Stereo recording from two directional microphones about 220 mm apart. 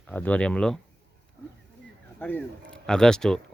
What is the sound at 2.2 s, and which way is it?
Speech, 10° left (ahead or behind).